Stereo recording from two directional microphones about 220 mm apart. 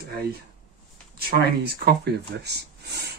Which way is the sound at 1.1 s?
45° right (ahead or behind).